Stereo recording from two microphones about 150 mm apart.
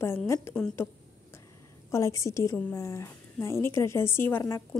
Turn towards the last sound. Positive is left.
turn(degrees=15)  # may be behind; listen again after turning